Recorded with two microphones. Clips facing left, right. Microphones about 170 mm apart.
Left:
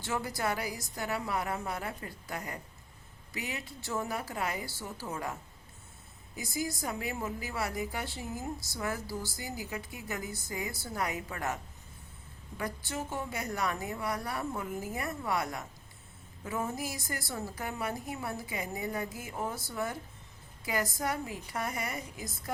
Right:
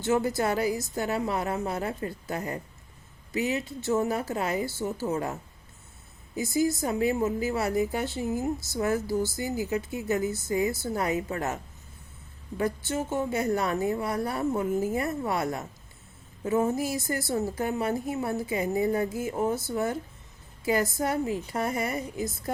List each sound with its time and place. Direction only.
0.0 s a woman's voice: 25° right (ahead or behind)
6.3 s a woman's voice: 25° right (ahead or behind)
12.5 s a woman's voice: 25° right (ahead or behind)